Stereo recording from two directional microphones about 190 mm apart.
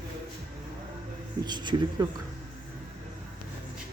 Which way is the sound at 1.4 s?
25° right (ahead or behind).